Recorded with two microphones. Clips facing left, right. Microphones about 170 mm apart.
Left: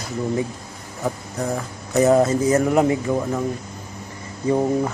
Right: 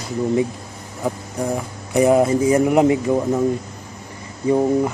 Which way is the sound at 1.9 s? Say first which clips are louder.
Right 1 dB; 10° right (ahead or behind).